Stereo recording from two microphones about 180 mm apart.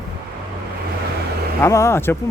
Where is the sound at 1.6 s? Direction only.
15° left (ahead or behind).